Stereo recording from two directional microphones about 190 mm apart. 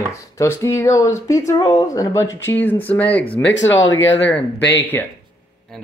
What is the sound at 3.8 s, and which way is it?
Speech, 75° left (ahead or behind).